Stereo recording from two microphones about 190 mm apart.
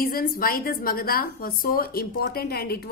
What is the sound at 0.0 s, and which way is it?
A woman's voice, 50° left (ahead or behind).